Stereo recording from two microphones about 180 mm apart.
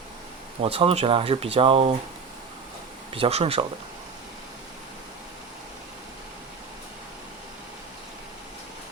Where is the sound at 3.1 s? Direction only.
30° right (ahead or behind).